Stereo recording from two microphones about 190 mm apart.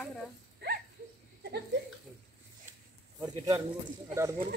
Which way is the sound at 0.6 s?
60° right (ahead or behind).